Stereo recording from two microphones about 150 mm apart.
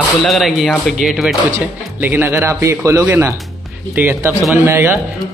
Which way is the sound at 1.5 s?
15° right (ahead or behind).